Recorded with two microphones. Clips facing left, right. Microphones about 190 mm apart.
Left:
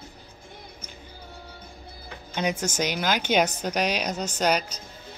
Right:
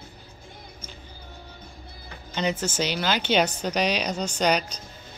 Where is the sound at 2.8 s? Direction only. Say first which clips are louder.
Even; 10° left (ahead or behind).